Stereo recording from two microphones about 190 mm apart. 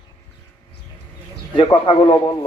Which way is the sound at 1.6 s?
25° left (ahead or behind).